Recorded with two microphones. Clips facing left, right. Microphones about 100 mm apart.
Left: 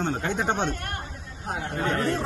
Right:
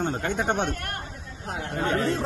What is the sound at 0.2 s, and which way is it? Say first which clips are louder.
Speech: even; 55° right (ahead or behind).